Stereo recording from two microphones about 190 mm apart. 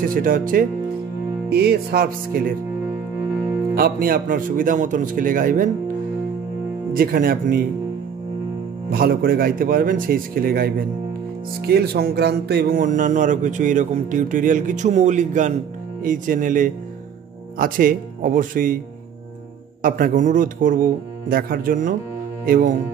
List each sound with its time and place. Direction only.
0.0 s speech: 45° right (ahead or behind)
1.5 s music: 60° right (ahead or behind)
3.7 s speech: 50° right (ahead or behind)
6.9 s speech: 50° right (ahead or behind)
8.9 s speech: 50° right (ahead or behind)
19.8 s speech: 45° right (ahead or behind)